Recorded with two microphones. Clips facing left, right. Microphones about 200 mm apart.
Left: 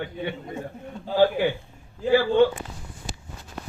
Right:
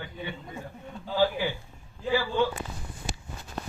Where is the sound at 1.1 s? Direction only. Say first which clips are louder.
Left 6 dB; 55° left (ahead or behind).